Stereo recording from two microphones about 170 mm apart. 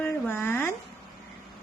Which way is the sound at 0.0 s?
15° left (ahead or behind).